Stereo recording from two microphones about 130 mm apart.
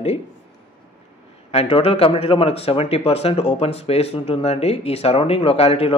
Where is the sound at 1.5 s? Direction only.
50° left (ahead or behind).